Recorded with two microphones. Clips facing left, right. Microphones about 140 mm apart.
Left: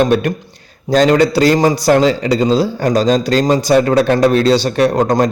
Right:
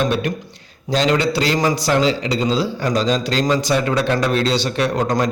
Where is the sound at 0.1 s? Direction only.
50° left (ahead or behind).